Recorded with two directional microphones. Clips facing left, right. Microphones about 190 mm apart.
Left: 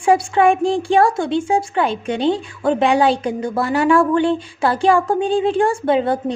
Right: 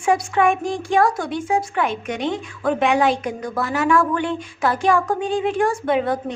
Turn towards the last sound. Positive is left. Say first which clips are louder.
# left 3 dB
turn(degrees=30)  # may be behind; listen again after turning